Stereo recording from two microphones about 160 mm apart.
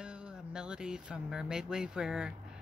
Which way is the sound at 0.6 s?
5° right (ahead or behind).